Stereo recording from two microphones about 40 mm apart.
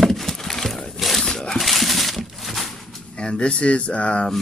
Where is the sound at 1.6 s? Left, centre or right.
Centre.